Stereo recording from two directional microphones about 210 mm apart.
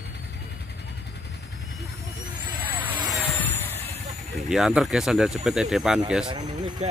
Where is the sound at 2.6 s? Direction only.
10° right (ahead or behind).